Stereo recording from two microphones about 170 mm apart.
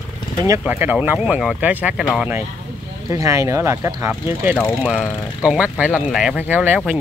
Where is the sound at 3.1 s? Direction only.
20° right (ahead or behind).